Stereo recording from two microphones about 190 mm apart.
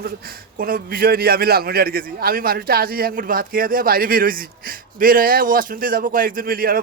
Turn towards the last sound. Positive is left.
turn(degrees=-50)  # may be behind; listen again after turning